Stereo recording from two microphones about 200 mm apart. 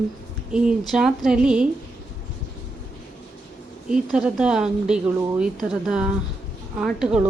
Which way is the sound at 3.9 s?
5° right (ahead or behind).